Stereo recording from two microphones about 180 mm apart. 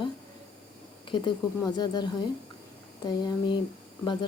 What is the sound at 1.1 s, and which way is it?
A woman's voice, 25° left (ahead or behind).